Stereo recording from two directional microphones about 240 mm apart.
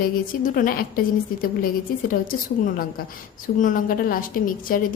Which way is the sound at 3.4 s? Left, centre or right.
Left.